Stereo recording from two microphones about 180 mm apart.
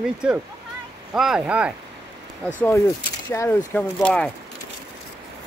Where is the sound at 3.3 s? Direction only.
15° left (ahead or behind).